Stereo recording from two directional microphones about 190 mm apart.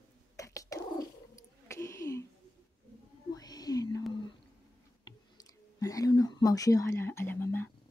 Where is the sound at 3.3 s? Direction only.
20° left (ahead or behind).